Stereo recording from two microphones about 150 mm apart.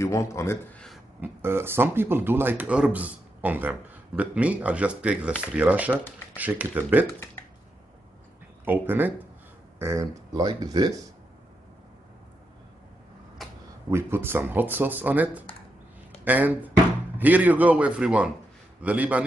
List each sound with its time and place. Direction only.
0.0 s speech: 20° left (ahead or behind)
1.2 s a man's voice: 15° right (ahead or behind)
7.1 s speech: 15° left (ahead or behind)
8.6 s a man's voice: 15° right (ahead or behind)
13.4 s a sound: centre (ahead or behind)
13.8 s a man's voice: 15° right (ahead or behind)